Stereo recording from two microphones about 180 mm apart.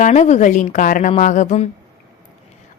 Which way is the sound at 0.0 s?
40° left (ahead or behind).